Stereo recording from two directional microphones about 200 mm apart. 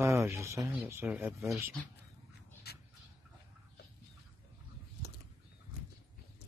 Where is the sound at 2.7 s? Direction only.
55° left (ahead or behind).